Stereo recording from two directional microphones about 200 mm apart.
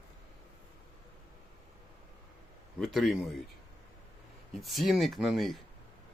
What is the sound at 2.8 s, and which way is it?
Speech, centre (ahead or behind).